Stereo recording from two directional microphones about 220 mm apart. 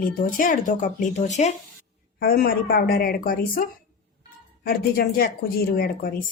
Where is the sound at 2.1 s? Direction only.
45° left (ahead or behind).